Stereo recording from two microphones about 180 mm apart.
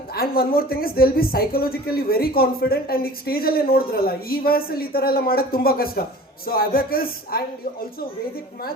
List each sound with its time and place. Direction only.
0.2 s speech: 55° left (ahead or behind)